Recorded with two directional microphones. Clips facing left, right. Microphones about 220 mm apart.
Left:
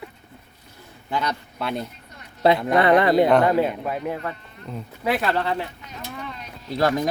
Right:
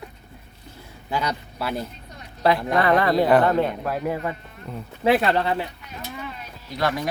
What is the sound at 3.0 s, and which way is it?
Speech, 20° left (ahead or behind).